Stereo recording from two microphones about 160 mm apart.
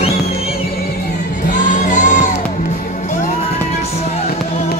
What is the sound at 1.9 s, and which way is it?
Music, 50° left (ahead or behind).